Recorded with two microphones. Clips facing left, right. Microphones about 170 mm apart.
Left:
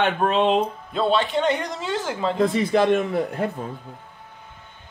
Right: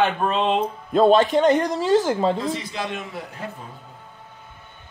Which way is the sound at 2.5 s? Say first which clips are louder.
Left 10 dB; 55° left (ahead or behind).